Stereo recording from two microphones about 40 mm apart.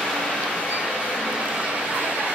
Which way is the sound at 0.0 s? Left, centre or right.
Centre.